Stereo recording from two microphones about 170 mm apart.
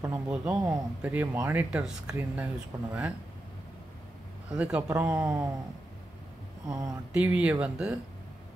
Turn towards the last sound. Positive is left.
turn(degrees=-5)  # may be behind; listen again after turning